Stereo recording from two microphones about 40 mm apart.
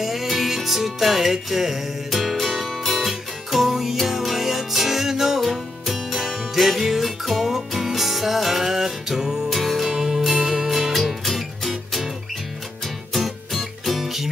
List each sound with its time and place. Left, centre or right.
0.0 s music: centre
2.0 s music: centre